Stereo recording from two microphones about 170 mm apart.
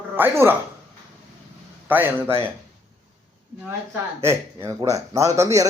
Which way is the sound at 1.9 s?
10° right (ahead or behind).